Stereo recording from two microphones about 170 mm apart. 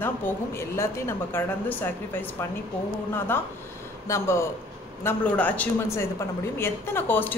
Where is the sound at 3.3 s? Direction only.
10° left (ahead or behind).